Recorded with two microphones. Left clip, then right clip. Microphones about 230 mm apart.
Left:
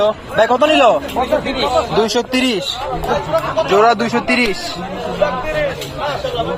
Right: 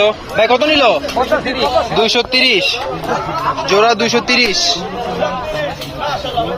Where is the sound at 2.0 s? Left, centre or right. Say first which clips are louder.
Right 3 dB; left.